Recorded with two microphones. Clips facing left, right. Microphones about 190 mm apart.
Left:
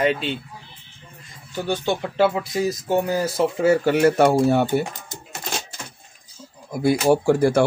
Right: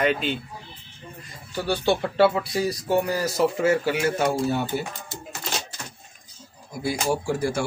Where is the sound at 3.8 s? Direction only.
50° left (ahead or behind).